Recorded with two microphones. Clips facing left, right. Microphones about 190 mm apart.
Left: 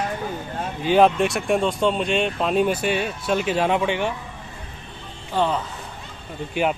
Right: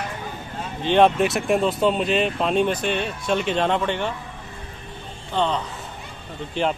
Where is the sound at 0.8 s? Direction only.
5° left (ahead or behind).